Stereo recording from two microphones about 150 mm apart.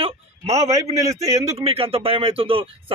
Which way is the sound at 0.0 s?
45° right (ahead or behind).